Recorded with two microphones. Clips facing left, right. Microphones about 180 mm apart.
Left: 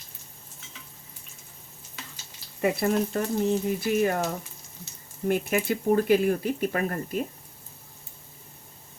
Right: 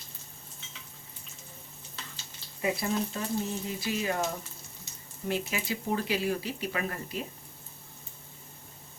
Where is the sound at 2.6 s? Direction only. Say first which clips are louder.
Left 6 dB; 60° left (ahead or behind).